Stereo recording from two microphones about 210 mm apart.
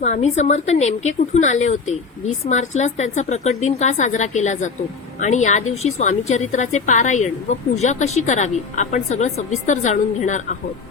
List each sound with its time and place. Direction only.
0.0 s a woman's voice: 30° left (ahead or behind)